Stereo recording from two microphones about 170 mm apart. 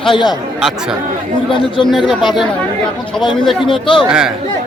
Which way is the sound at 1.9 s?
Centre (ahead or behind).